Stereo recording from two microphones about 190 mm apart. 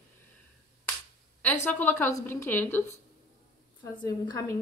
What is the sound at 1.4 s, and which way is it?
A woman's voice, 10° left (ahead or behind).